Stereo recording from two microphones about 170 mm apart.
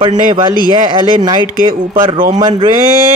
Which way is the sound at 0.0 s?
25° right (ahead or behind).